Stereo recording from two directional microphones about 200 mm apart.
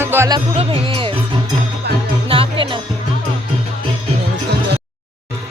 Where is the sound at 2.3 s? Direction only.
25° right (ahead or behind).